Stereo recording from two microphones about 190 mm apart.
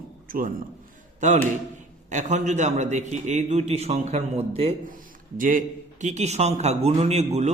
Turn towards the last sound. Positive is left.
turn(degrees=-35)  # may be behind; listen again after turning